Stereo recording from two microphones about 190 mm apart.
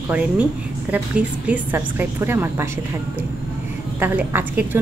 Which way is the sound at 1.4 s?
10° right (ahead or behind).